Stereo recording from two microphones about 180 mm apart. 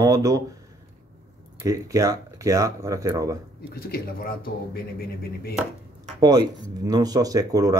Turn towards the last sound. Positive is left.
turn(degrees=-20)  # may be behind; listen again after turning